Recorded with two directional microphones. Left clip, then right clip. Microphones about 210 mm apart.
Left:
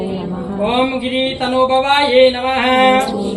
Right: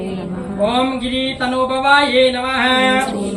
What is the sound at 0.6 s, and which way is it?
Music, 25° right (ahead or behind).